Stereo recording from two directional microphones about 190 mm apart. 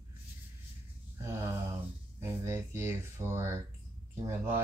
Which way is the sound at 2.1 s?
15° right (ahead or behind).